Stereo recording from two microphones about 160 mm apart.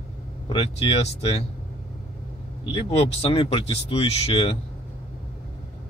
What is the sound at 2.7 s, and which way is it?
Speech, 40° left (ahead or behind).